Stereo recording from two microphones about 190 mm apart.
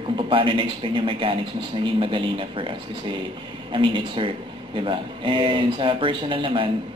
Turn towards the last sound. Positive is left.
turn(degrees=-25)  # may be behind; listen again after turning